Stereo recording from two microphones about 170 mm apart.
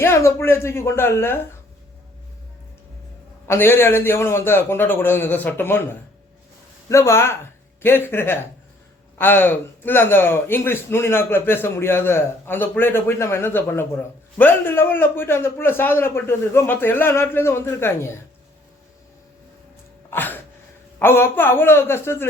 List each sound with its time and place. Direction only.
0.0 s a man's voice: 15° left (ahead or behind)
3.4 s a man's voice: 15° left (ahead or behind)
6.8 s a man's voice: 15° left (ahead or behind)
20.1 s a sound: 10° left (ahead or behind)
21.0 s a man's voice: 15° left (ahead or behind)